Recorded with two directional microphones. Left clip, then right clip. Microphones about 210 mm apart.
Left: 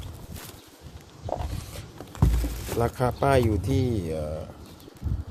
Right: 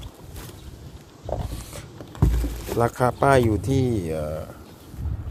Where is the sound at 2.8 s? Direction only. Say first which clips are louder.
Right 5 dB; 10° right (ahead or behind).